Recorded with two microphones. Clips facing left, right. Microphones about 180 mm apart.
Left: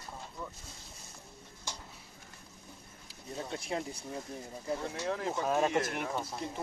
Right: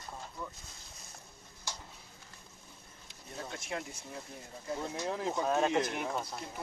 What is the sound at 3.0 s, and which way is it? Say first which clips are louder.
Speech: left 3 dB; 30° left (ahead or behind).